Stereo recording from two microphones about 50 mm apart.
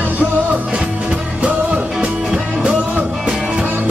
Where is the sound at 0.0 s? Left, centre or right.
Right; by 3.6 s centre.